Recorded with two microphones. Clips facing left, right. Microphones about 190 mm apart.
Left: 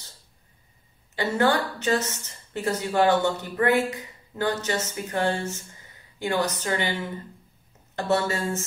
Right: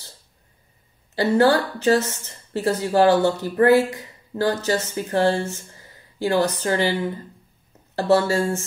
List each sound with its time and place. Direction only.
1.1 s speech: 35° right (ahead or behind)